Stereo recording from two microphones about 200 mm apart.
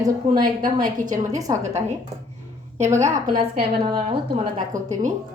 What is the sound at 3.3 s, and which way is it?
Speech, 25° right (ahead or behind).